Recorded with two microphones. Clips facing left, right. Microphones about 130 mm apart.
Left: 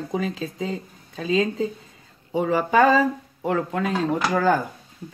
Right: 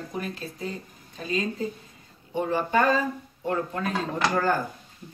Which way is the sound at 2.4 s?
90° left.